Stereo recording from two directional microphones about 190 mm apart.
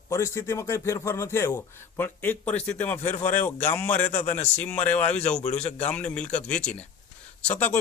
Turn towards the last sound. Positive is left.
turn(degrees=5)  # may be behind; listen again after turning